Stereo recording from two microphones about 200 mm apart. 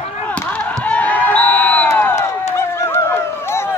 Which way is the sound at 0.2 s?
5° left (ahead or behind).